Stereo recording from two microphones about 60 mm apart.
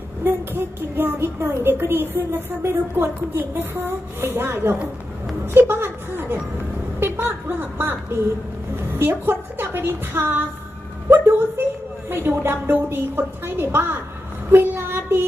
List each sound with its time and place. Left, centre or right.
0.2 s a woman's voice: right
11.1 s a sound: right
12.1 s a woman's voice: right
14.5 s child singing: right